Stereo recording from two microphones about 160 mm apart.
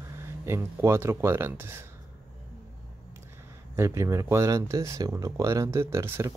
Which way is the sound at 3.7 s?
15° right (ahead or behind).